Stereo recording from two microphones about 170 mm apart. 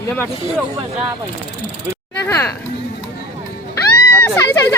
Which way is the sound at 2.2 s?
15° left (ahead or behind).